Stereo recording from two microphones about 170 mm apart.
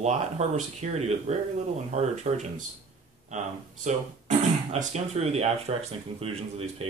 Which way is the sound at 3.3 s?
45° right (ahead or behind).